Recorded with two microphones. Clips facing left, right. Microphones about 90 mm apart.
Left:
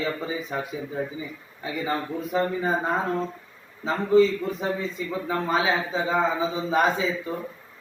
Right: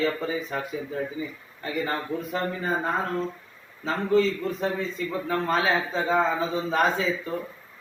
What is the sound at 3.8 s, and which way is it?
A man's voice, 15° left (ahead or behind).